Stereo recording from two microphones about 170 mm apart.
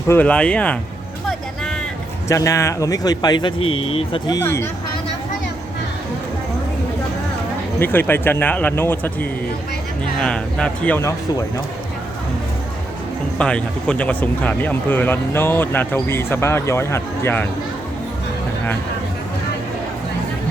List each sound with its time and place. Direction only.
0.1 s speech: 10° left (ahead or behind)
2.3 s speech: 20° left (ahead or behind)
4.4 s speech: 15° left (ahead or behind)
7.8 s speech: 10° left (ahead or behind)
10.2 s speech: 5° left (ahead or behind)
13.4 s speech: 5° left (ahead or behind)